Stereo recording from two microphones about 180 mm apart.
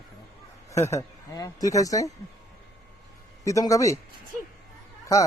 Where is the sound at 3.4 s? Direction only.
20° left (ahead or behind).